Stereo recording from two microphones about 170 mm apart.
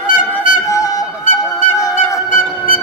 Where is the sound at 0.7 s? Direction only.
20° left (ahead or behind).